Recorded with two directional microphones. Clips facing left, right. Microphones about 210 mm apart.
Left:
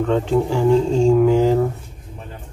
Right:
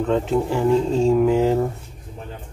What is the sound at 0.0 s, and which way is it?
Speech, centre (ahead or behind).